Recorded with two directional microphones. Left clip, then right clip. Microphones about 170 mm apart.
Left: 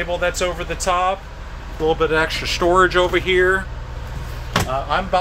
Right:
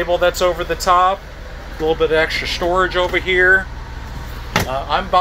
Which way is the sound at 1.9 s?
30° left (ahead or behind).